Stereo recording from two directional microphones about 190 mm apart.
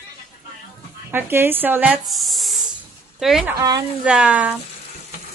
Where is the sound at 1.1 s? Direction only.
10° right (ahead or behind).